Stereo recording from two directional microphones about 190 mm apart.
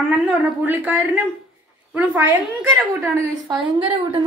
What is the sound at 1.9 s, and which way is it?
Speech, 5° right (ahead or behind).